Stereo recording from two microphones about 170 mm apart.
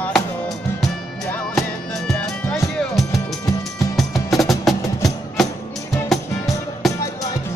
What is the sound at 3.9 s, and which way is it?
Music, centre (ahead or behind).